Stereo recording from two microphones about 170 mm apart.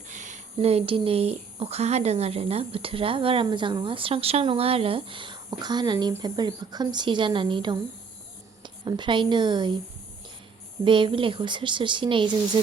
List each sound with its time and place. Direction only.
0.1 s a woman's voice: 45° right (ahead or behind); by 9.7 s 25° right (ahead or behind)
10.8 s speech: 30° right (ahead or behind)